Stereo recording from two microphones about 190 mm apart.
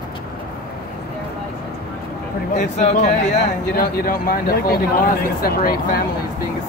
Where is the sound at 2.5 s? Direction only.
40° left (ahead or behind).